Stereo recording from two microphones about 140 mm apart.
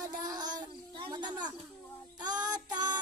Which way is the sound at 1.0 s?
30° right (ahead or behind).